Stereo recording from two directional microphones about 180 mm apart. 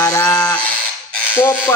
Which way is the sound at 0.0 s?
10° left (ahead or behind).